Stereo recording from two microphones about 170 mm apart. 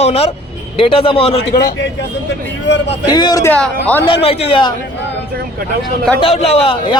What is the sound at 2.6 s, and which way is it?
Speech, 90° left.